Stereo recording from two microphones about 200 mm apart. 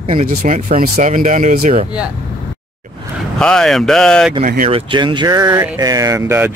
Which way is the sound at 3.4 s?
5° left (ahead or behind).